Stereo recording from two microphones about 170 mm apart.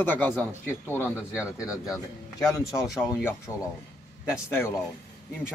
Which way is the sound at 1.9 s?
20° left (ahead or behind).